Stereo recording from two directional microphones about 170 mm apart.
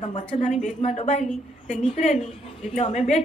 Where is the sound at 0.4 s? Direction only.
45° left (ahead or behind).